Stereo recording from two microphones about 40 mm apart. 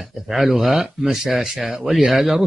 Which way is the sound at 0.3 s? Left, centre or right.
Centre.